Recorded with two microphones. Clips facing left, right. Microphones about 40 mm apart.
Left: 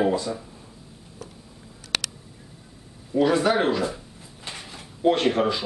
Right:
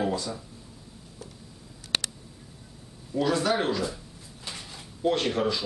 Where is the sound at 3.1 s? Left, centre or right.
Left.